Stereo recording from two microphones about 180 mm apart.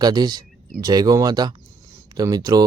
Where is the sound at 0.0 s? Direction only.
20° right (ahead or behind).